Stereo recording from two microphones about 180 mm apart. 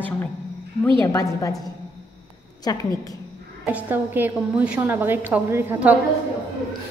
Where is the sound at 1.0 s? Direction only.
20° left (ahead or behind).